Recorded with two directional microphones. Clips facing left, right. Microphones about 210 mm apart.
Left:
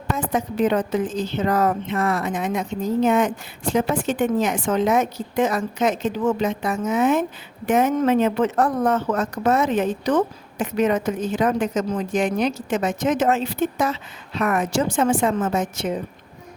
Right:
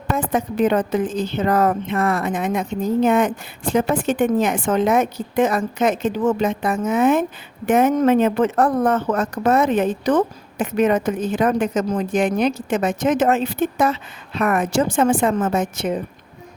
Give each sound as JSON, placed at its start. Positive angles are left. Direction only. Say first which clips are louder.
{"t": 0.3, "sound": "a woman's voice", "louder": "right 2 dB", "side_deg": -55}